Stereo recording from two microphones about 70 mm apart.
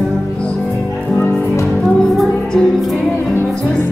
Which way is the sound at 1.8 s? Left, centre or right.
Centre.